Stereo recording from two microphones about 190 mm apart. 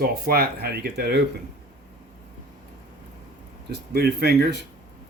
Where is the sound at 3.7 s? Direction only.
60° right (ahead or behind).